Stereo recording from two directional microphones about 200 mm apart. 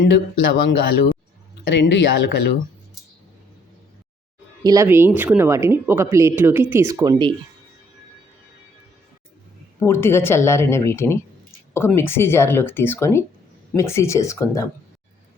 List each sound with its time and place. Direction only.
0.6 s speech: 55° left (ahead or behind)
4.6 s speech: 15° right (ahead or behind)
9.8 s speech: 10° left (ahead or behind)